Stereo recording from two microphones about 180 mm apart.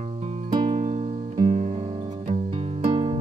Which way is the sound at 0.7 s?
40° right (ahead or behind).